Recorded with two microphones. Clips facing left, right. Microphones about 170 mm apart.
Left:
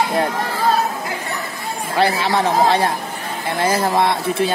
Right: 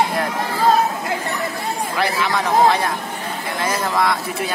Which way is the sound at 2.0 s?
30° left (ahead or behind).